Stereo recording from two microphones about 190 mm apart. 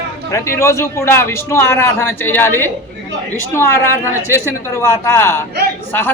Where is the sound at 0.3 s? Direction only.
15° left (ahead or behind).